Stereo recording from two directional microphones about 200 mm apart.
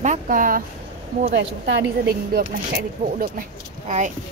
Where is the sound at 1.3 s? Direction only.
65° right (ahead or behind).